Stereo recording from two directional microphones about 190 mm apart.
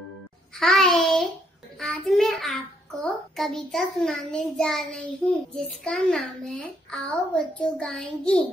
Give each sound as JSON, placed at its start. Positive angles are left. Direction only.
{"t": 0.6, "sound": "a child's voice", "side_deg": 0}